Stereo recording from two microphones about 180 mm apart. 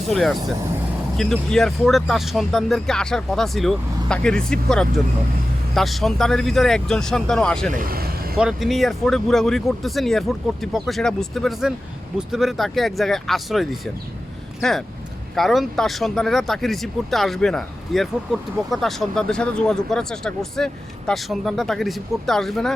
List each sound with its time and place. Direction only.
0.1 s speech: centre (ahead or behind)
7.7 s vehicle: 50° right (ahead or behind)
8.4 s speech: 5° right (ahead or behind)